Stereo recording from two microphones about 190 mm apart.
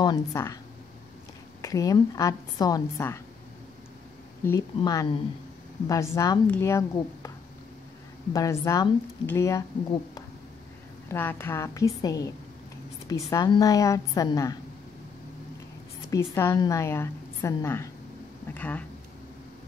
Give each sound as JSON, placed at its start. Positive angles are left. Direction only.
{"t": 0.0, "sound": "a woman's voice", "side_deg": 20}
{"t": 1.6, "sound": "a woman's voice", "side_deg": 20}
{"t": 4.5, "sound": "a woman's voice", "side_deg": 20}
{"t": 11.1, "sound": "a woman's voice", "side_deg": 10}
{"t": 16.1, "sound": "a woman's voice", "side_deg": 15}